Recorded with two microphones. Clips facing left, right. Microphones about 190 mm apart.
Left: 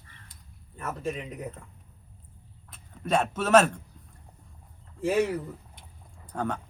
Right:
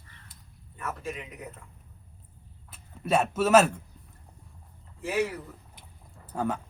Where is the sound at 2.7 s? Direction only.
5° right (ahead or behind).